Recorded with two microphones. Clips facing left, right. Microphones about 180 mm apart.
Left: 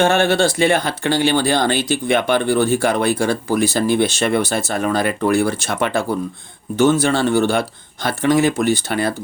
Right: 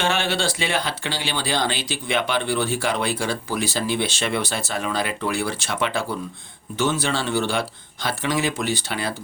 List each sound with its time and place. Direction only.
0.0 s speech: 45° left (ahead or behind)